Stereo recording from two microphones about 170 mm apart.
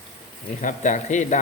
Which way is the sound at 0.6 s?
45° left (ahead or behind).